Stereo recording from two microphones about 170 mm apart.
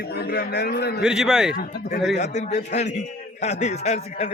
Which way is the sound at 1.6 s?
60° left (ahead or behind).